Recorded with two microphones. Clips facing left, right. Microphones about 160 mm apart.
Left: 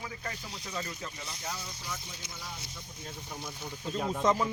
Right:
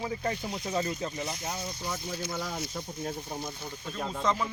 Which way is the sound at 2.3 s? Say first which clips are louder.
Right 10 dB; 60° right (ahead or behind).